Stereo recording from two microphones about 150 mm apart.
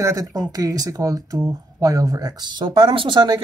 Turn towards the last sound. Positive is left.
turn(degrees=-30)  # may be behind; listen again after turning